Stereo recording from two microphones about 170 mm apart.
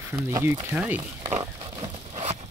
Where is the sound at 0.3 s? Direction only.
15° right (ahead or behind).